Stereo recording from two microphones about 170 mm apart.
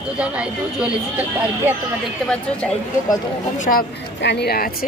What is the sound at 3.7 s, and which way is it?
Speech, 70° left (ahead or behind).